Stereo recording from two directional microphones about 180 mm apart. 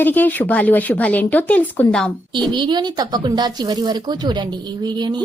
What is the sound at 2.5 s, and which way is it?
Speech, 25° right (ahead or behind).